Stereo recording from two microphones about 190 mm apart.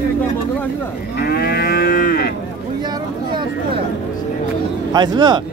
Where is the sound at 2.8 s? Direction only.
20° right (ahead or behind).